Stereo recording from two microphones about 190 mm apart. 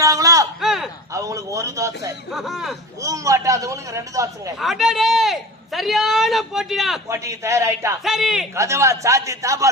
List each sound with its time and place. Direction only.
0.0 s a sound: 20° right (ahead or behind)
0.6 s a sound: centre (ahead or behind)
1.1 s a man's voice: 15° right (ahead or behind)
2.3 s a man's voice: centre (ahead or behind)
3.0 s a man's voice: 15° right (ahead or behind)
4.5 s a man's voice: centre (ahead or behind)
7.1 s a man's voice: 15° right (ahead or behind)
8.0 s a man's voice: centre (ahead or behind)
8.5 s a man's voice: 15° right (ahead or behind)